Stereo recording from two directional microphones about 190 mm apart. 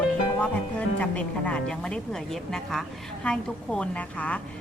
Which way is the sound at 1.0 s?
5° left (ahead or behind).